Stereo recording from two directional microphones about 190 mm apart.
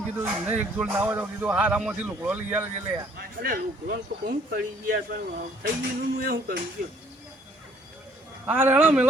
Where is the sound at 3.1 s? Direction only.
50° right (ahead or behind).